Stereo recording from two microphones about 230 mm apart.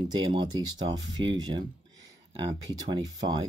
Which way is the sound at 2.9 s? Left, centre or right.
Centre.